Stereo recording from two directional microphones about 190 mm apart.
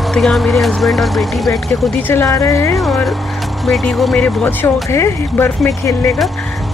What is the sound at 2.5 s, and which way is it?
Speech, 15° left (ahead or behind).